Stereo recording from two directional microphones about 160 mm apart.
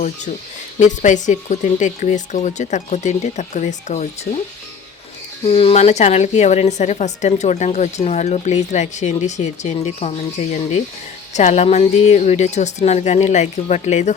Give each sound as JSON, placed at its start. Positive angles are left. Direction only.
{"t": 0.8, "sound": "a woman's voice", "side_deg": 50}
{"t": 5.5, "sound": "a woman's voice", "side_deg": 40}